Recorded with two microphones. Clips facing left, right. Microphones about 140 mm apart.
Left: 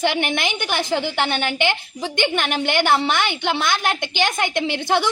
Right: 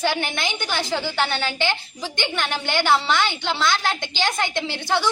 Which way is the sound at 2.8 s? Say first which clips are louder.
Right 1 dB; 55° left (ahead or behind).